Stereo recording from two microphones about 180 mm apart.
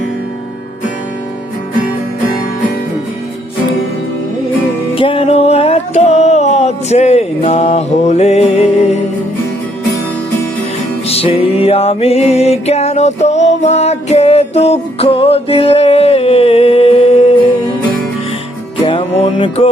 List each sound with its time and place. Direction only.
4.9 s a sound: 30° left (ahead or behind)
11.1 s music: 35° left (ahead or behind)
18.9 s music: 30° left (ahead or behind)